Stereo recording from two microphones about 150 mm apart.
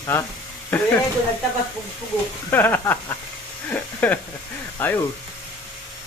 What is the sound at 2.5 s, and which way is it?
Speech, 15° left (ahead or behind).